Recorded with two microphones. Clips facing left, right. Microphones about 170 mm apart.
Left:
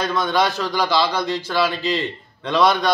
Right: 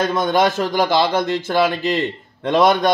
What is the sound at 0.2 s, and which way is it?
A man's voice, 50° right (ahead or behind).